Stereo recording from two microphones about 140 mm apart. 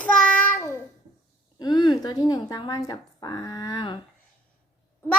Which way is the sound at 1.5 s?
30° left (ahead or behind).